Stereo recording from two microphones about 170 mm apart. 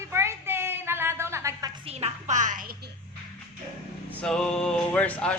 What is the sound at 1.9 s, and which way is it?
Music, 35° right (ahead or behind).